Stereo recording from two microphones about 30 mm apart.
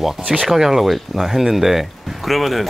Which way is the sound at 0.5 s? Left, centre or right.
Centre.